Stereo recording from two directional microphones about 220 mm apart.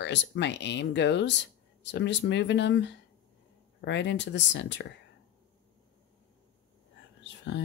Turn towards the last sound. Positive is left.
turn(degrees=55)  # may be behind; listen again after turning